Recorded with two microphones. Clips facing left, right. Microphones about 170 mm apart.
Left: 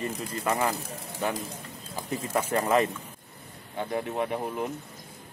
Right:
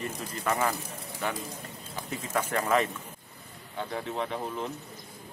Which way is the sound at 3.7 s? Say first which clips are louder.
Left 3 dB; 15° left (ahead or behind).